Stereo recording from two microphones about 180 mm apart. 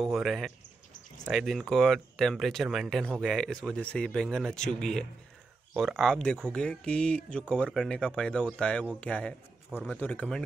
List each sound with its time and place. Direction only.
0.0 s a man's voice: centre (ahead or behind)